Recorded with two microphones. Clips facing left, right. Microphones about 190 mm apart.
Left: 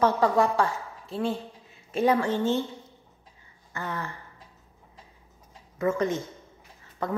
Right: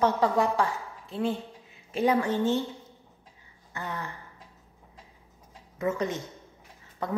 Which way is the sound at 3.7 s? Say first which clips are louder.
Left 2 dB; 15° right (ahead or behind).